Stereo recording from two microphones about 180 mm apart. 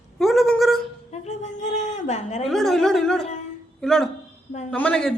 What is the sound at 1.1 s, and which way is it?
A woman's voice, 40° left (ahead or behind).